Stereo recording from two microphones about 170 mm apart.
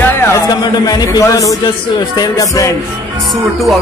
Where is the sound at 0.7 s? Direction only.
20° left (ahead or behind).